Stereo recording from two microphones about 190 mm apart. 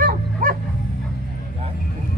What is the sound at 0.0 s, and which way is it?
Bow-wow, 45° right (ahead or behind).